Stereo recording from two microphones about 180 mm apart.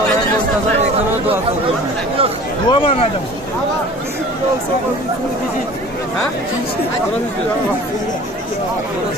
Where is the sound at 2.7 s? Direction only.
30° left (ahead or behind).